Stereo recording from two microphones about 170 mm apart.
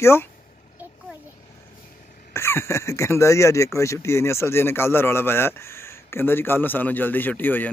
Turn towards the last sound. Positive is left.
turn(degrees=10)  # may be behind; listen again after turning